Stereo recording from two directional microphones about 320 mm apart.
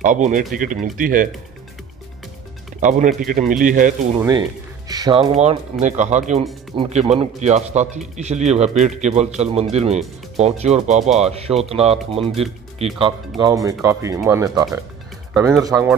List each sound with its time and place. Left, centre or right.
0.0 s speech: right
2.8 s speech: right
4.2 s speech: centre